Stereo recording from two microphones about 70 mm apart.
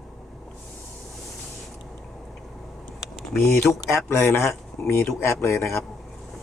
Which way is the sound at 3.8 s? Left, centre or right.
Left.